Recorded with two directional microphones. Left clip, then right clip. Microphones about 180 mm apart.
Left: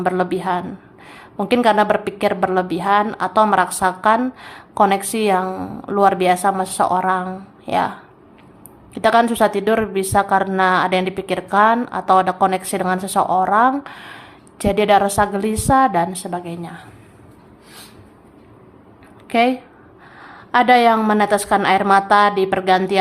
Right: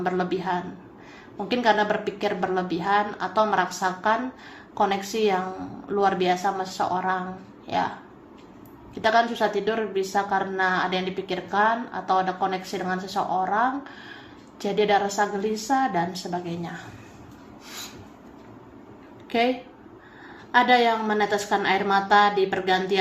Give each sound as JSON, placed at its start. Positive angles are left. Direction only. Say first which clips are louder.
{"t": 0.0, "sound": "a woman's voice", "louder": "left 7 dB", "side_deg": 30}
{"t": 9.0, "sound": "a woman's voice", "louder": "left 7 dB", "side_deg": 35}
{"t": 19.3, "sound": "a woman's voice", "louder": "left 7 dB", "side_deg": 30}